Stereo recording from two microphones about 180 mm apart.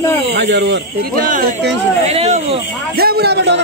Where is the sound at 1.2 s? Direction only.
50° right (ahead or behind).